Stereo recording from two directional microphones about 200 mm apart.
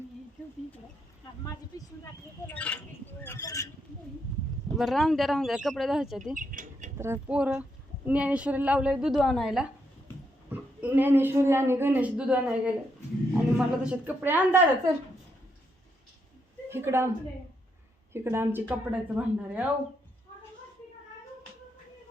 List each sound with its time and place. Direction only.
2.5 s speech: 5° left (ahead or behind)
4.8 s a woman's voice: centre (ahead or behind)
6.3 s speech: 40° right (ahead or behind)
7.0 s a woman's voice: 10° right (ahead or behind)
13.8 s speech: 10° right (ahead or behind)
16.6 s a woman's voice: 10° right (ahead or behind)
18.1 s speech: 10° right (ahead or behind)